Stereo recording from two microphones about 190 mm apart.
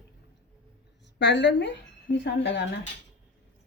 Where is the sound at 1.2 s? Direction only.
65° left (ahead or behind).